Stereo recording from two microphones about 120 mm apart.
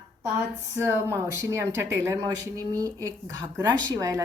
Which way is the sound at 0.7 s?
20° right (ahead or behind).